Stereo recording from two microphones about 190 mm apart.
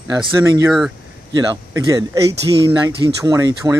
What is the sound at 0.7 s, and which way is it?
Speech, 5° right (ahead or behind).